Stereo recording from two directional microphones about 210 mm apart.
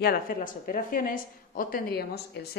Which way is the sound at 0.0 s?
45° left (ahead or behind).